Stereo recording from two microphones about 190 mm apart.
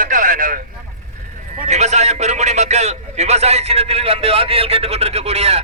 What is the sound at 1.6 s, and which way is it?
A man's voice, 35° right (ahead or behind).